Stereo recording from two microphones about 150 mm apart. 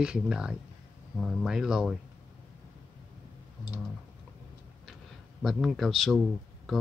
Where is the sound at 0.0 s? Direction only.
5° right (ahead or behind).